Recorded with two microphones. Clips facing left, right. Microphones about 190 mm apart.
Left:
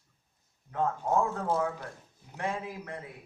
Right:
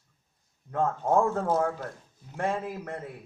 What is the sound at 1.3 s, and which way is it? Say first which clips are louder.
A man's voice: right 4 dB; 50° right (ahead or behind).